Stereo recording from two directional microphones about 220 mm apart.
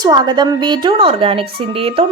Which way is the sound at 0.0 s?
20° right (ahead or behind).